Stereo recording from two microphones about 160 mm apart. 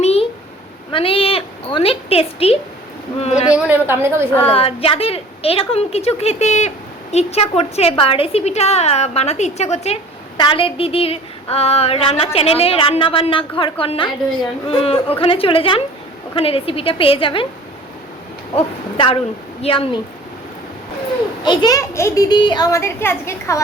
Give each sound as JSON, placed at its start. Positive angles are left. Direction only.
{"t": 0.0, "sound": "a sound", "side_deg": 40}
{"t": 0.9, "sound": "a woman's voice", "side_deg": 35}
{"t": 3.5, "sound": "a woman's voice", "side_deg": -10}
{"t": 4.5, "sound": "a woman's voice", "side_deg": 35}
{"t": 18.5, "sound": "a woman's voice", "side_deg": 35}
{"t": 21.4, "sound": "speech", "side_deg": 25}